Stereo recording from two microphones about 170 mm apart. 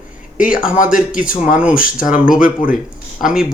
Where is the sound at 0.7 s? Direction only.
50° left (ahead or behind).